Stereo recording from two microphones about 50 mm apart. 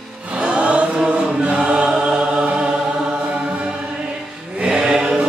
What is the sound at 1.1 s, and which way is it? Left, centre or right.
Choir, centre.